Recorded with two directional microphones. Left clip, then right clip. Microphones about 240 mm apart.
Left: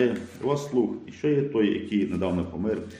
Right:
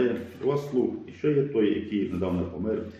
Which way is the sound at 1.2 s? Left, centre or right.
Left.